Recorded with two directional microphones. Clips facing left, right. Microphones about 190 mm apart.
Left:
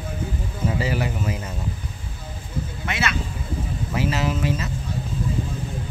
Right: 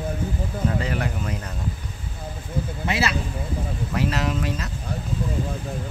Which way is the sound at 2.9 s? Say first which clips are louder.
Right 2 dB; 35° right (ahead or behind).